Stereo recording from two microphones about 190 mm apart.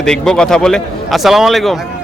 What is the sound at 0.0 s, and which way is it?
A man's voice, 5° left (ahead or behind).